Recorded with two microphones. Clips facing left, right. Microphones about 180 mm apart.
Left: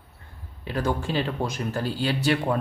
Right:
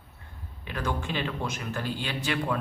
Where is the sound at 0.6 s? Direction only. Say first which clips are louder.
Left 5 dB; 35° left (ahead or behind).